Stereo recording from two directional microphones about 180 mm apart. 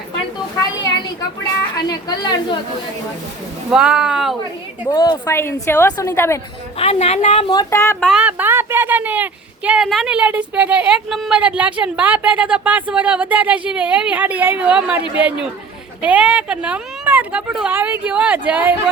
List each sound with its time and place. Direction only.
1.7 s a woman's voice: 20° left (ahead or behind)
3.7 s speech: 5° right (ahead or behind)
4.9 s a woman's voice: 25° left (ahead or behind)
6.7 s a woman's voice: 35° left (ahead or behind); by 7.9 s 15° left (ahead or behind)
8.0 s speech: 5° right (ahead or behind)